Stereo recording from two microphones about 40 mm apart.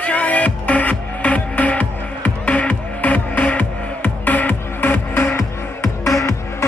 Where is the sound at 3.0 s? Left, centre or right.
Left.